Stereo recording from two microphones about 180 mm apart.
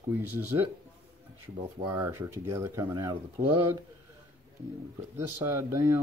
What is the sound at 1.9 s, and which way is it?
Speech, 15° right (ahead or behind).